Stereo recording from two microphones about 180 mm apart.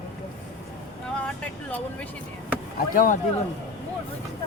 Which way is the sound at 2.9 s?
50° left (ahead or behind).